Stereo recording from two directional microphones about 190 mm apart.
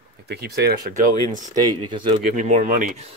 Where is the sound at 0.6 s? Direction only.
50° right (ahead or behind).